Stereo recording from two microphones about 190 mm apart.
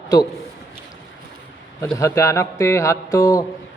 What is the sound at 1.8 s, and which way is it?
A man's voice, 15° left (ahead or behind).